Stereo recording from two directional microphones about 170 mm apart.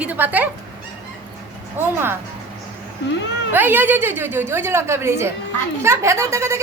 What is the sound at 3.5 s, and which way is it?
A woman's voice, 10° right (ahead or behind).